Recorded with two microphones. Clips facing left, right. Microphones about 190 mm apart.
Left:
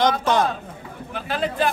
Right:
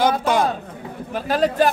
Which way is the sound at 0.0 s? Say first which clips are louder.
Right 1 dB; 10° right (ahead or behind).